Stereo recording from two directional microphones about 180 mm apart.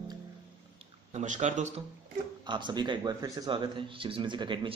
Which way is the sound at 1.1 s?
40° right (ahead or behind).